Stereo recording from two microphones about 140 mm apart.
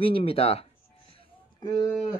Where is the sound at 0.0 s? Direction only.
40° left (ahead or behind).